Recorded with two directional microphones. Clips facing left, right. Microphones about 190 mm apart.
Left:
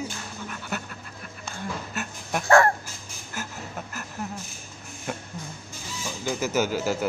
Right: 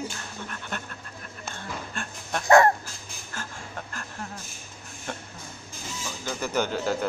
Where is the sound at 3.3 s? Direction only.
10° left (ahead or behind).